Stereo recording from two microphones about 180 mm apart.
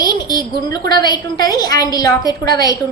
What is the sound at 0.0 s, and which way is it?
A woman's voice, 20° left (ahead or behind).